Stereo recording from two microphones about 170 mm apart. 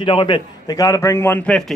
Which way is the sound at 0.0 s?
30° left (ahead or behind).